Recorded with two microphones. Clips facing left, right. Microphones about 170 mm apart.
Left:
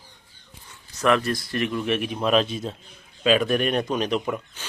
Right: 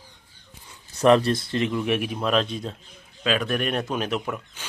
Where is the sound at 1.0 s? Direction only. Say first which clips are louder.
Right 4 dB; 30° right (ahead or behind); by 2.1 s 10° right (ahead or behind).